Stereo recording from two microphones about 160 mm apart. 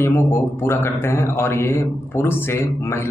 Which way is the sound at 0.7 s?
15° left (ahead or behind).